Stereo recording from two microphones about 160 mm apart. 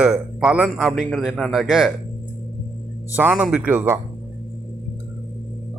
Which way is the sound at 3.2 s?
5° right (ahead or behind).